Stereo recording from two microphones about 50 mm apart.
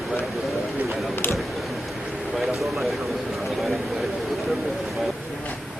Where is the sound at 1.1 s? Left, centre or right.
Left.